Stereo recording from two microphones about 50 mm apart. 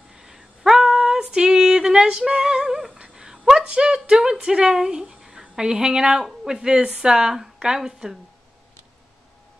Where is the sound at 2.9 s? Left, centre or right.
Centre.